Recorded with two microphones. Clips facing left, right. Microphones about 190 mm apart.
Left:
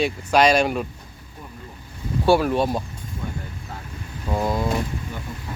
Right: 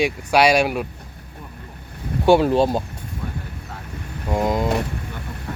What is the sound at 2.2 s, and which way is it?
Speech, 20° right (ahead or behind).